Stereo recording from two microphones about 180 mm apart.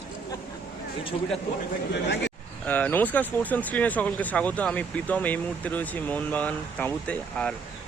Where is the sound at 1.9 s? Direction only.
75° left (ahead or behind).